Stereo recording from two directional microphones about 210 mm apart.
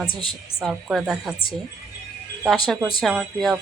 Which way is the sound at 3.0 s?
Centre (ahead or behind).